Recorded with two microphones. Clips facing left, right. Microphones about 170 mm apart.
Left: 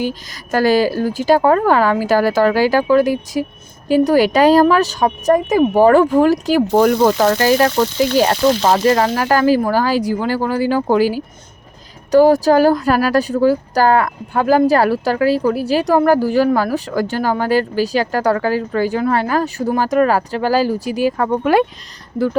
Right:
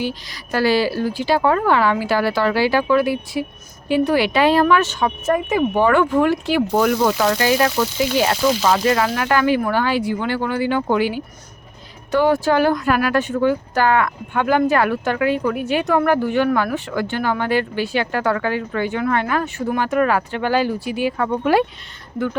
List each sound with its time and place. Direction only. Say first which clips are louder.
0.0 s speech: left 3 dB; 45° left (ahead or behind)